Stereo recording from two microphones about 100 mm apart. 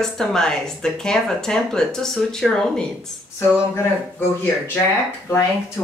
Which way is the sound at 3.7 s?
25° left (ahead or behind).